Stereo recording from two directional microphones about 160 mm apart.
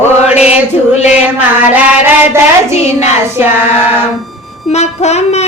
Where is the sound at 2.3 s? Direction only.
15° right (ahead or behind).